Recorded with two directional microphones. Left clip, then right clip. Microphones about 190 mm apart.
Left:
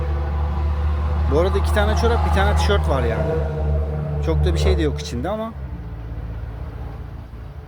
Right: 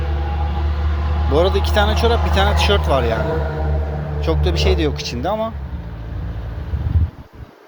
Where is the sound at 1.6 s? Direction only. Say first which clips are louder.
Right 3 dB; 5° left (ahead or behind).